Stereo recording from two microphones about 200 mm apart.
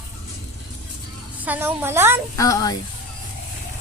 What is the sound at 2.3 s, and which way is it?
Speech, 15° left (ahead or behind).